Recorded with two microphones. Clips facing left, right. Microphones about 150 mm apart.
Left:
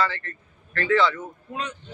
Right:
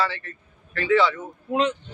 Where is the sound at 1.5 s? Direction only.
90° right.